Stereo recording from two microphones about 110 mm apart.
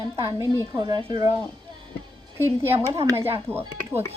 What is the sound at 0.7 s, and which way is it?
Speech, 40° right (ahead or behind).